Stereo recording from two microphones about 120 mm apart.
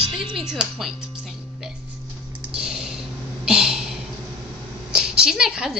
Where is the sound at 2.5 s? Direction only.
5° right (ahead or behind).